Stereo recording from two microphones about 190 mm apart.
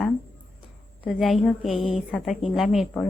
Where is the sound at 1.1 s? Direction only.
Centre (ahead or behind).